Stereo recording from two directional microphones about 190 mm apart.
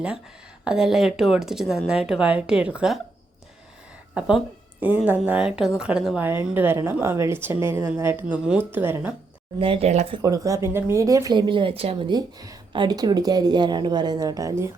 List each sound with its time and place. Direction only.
0.6 s speech: 5° right (ahead or behind)
4.1 s speech: 5° right (ahead or behind)
9.6 s speech: 30° right (ahead or behind)
10.2 s speech: 20° right (ahead or behind)